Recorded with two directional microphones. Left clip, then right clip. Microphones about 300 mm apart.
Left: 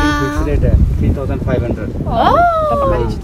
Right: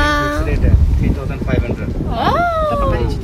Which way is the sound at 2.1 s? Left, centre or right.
Centre.